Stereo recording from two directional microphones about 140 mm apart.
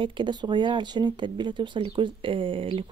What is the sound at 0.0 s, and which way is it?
Speech, 35° right (ahead or behind).